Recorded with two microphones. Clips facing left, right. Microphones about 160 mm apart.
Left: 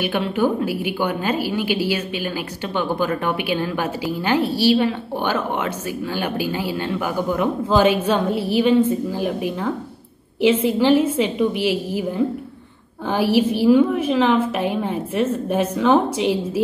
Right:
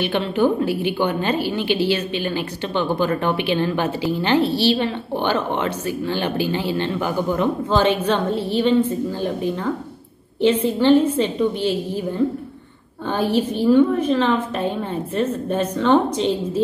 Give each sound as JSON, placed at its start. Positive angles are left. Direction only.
{"t": 0.0, "sound": "a woman's voice", "side_deg": 10}
{"t": 13.1, "sound": "a woman's voice", "side_deg": 10}